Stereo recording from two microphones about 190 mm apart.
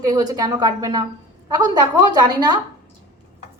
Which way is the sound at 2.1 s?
20° right (ahead or behind).